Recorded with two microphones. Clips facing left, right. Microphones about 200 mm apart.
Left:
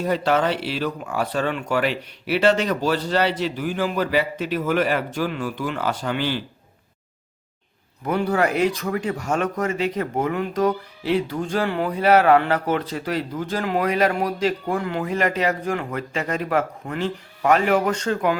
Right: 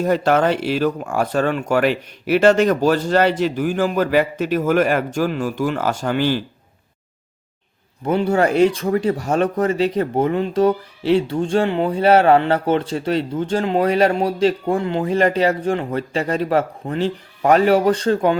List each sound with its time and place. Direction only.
0.0 s speech: 50° right (ahead or behind)
8.0 s speech: 25° right (ahead or behind)